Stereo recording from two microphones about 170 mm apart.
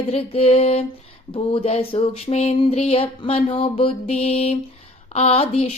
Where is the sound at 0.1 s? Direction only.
35° left (ahead or behind).